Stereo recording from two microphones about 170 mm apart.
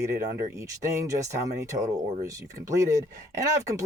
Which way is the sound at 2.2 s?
20° right (ahead or behind).